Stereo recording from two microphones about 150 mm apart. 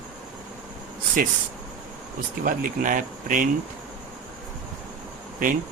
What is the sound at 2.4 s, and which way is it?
Speech, 65° right (ahead or behind).